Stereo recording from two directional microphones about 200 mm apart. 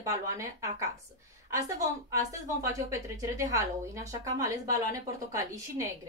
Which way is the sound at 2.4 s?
15° right (ahead or behind).